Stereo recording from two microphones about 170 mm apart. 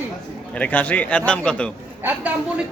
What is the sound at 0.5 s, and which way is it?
Speech, 10° left (ahead or behind).